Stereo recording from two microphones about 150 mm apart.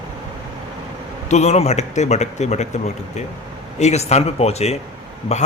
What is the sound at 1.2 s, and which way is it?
A man's voice, 50° left (ahead or behind).